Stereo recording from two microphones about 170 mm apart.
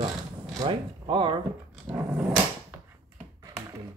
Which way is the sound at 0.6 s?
30° right (ahead or behind).